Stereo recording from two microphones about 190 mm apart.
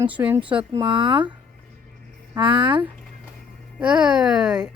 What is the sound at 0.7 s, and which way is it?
Speech, 25° right (ahead or behind).